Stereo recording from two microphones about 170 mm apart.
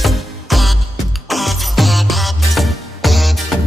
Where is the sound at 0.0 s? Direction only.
Centre (ahead or behind).